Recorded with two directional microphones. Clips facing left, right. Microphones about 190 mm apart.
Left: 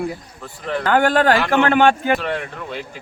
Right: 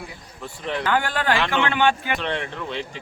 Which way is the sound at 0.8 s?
50° left (ahead or behind).